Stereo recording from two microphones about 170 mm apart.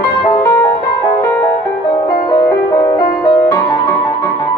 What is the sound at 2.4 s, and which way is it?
Music, 20° left (ahead or behind).